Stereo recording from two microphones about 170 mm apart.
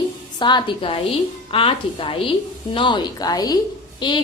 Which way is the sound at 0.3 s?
25° left (ahead or behind).